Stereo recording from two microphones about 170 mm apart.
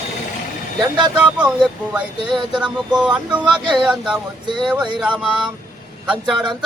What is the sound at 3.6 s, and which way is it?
Speech, 30° right (ahead or behind).